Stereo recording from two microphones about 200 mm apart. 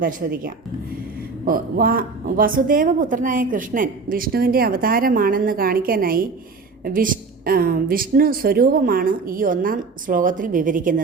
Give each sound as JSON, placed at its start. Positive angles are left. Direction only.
{"t": 0.0, "sound": "speech", "side_deg": -45}